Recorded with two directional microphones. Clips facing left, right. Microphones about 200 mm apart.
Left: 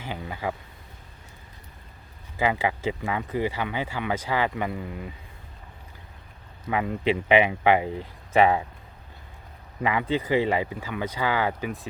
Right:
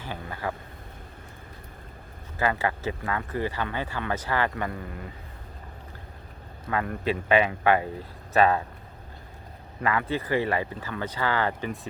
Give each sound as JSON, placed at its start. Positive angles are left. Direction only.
{"t": 0.0, "sound": "a sound", "side_deg": 15}
{"t": 2.4, "sound": "speech", "side_deg": 15}
{"t": 6.7, "sound": "speech", "side_deg": 15}
{"t": 9.8, "sound": "speech", "side_deg": 15}